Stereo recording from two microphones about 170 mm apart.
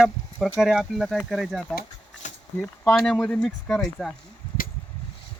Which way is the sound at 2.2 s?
45° left (ahead or behind).